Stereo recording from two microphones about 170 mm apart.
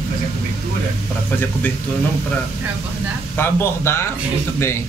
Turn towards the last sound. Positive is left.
turn(degrees=15)  # may be behind; listen again after turning